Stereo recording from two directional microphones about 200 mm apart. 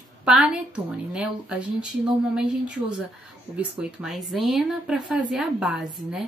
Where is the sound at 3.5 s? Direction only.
Centre (ahead or behind).